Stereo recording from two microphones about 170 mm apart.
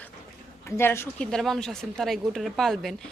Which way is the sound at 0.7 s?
15° left (ahead or behind).